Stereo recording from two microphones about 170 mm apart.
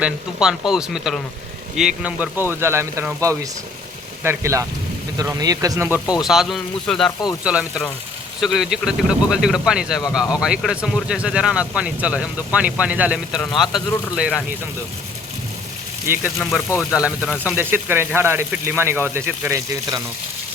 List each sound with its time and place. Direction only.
0.0 s speech: 5° right (ahead or behind)
6.2 s speech: centre (ahead or behind)
16.1 s speech: 15° right (ahead or behind)